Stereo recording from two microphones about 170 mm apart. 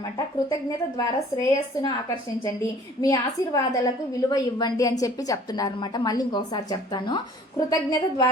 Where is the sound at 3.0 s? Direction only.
20° left (ahead or behind).